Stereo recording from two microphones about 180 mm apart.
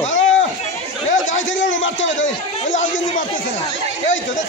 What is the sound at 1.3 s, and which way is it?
Speech, 90° left.